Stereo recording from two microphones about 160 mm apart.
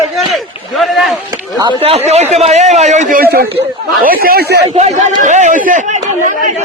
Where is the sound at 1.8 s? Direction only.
40° right (ahead or behind).